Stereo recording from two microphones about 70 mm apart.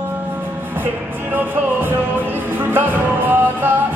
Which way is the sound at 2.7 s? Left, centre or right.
Right.